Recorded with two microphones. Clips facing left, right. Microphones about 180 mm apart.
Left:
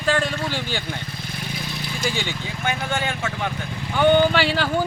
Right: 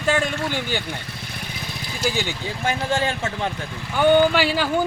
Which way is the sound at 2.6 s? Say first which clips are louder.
Right 3 dB; 35° right (ahead or behind).